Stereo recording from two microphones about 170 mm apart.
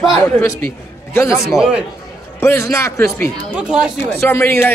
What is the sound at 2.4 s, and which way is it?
Speech, 15° left (ahead or behind).